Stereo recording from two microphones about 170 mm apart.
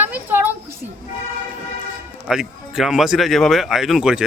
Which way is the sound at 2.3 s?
5° right (ahead or behind).